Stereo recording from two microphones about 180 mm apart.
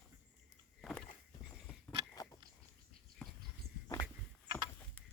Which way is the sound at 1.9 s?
20° left (ahead or behind).